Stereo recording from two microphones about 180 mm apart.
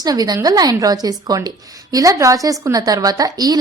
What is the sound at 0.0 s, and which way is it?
A woman's voice, 20° right (ahead or behind).